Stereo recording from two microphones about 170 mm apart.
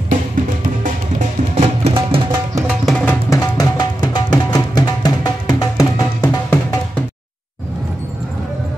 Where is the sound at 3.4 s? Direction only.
20° left (ahead or behind).